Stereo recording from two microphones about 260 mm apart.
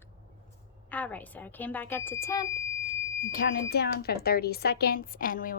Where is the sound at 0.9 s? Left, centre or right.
Centre.